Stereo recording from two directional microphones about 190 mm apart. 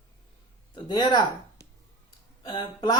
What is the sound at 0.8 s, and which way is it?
Speech, 25° left (ahead or behind).